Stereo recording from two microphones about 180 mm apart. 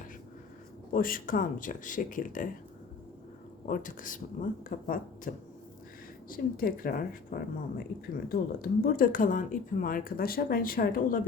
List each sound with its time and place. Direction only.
0.9 s speech: 50° left (ahead or behind)
3.7 s speech: 45° left (ahead or behind)